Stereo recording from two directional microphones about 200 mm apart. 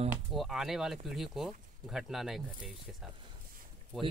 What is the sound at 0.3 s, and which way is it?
Speech, centre (ahead or behind).